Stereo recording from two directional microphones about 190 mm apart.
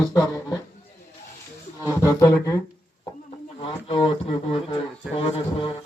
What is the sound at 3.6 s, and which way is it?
Speech, 30° left (ahead or behind).